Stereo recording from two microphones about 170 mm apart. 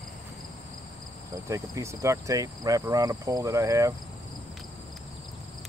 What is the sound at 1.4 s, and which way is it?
Cricket, 15° right (ahead or behind).